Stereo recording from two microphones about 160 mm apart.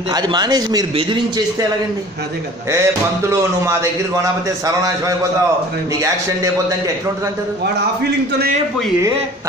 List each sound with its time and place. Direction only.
0.1 s a man's voice: 25° right (ahead or behind)
2.7 s speech: 15° right (ahead or behind)